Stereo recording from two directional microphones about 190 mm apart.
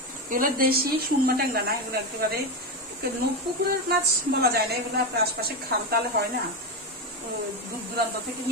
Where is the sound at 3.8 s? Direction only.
55° right (ahead or behind).